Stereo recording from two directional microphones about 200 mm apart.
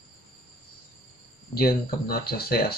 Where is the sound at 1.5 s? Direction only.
50° left (ahead or behind).